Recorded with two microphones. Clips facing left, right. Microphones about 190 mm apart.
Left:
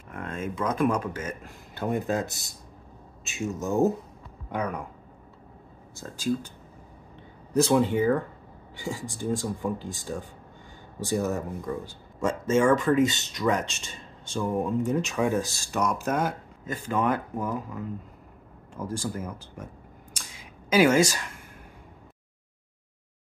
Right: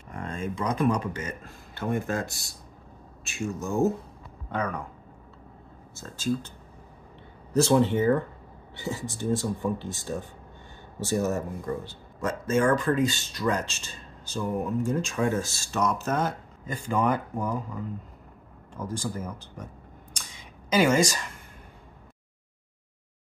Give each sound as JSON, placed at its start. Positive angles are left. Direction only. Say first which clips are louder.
{"t": 0.1, "sound": "speech", "louder": "even", "side_deg": 5}
{"t": 3.3, "sound": "speech", "louder": "left 2 dB", "side_deg": 20}
{"t": 5.9, "sound": "speech", "louder": "left 1 dB", "side_deg": 15}
{"t": 7.5, "sound": "speech", "louder": "even", "side_deg": 10}
{"t": 18.8, "sound": "speech", "louder": "left 1 dB", "side_deg": 10}
{"t": 20.2, "sound": "a sound", "louder": "left 1 dB", "side_deg": 5}